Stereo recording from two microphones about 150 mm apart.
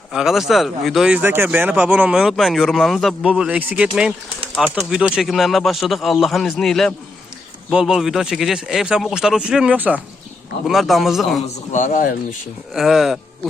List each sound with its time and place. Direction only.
0.1 s speech: centre (ahead or behind)
10.7 s speech: centre (ahead or behind)
11.7 s speech: 60° left (ahead or behind)
12.7 s speech: centre (ahead or behind)